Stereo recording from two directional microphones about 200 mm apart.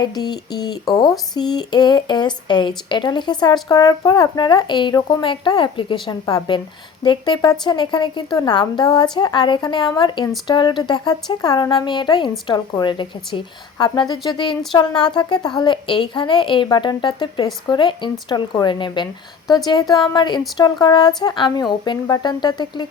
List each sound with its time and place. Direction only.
0.0 s speech: 20° left (ahead or behind)